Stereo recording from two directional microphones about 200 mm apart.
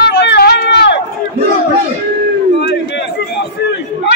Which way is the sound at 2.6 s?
65° left (ahead or behind).